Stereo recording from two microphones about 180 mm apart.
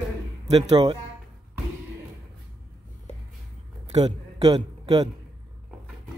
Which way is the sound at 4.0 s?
25° right (ahead or behind).